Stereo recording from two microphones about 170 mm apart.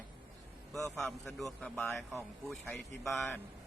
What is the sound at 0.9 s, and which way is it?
Speech, centre (ahead or behind).